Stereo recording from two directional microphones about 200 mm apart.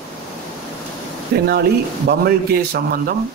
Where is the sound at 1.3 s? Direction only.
55° right (ahead or behind).